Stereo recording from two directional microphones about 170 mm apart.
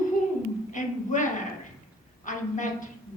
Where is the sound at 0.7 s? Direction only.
50° left (ahead or behind).